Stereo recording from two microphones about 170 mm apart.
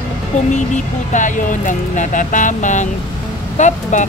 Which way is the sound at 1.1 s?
50° left (ahead or behind).